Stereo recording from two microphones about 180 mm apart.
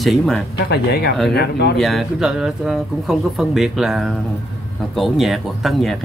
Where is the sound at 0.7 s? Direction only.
65° left (ahead or behind).